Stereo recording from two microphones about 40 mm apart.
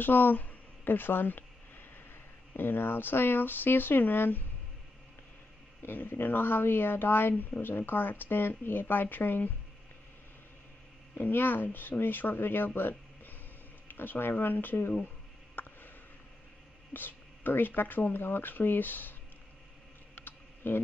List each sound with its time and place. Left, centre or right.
0.0 s speech: left
2.5 s speech: left
5.8 s speech: left
11.1 s speech: left
15.6 s a sound: left
16.9 s speech: left
20.2 s typing: left